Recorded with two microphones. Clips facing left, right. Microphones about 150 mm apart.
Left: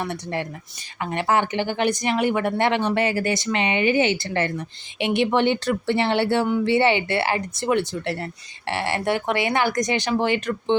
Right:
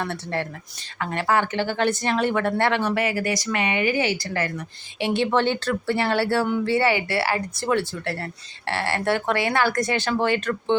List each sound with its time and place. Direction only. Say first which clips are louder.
0.0 s a woman's voice: even; 15° left (ahead or behind)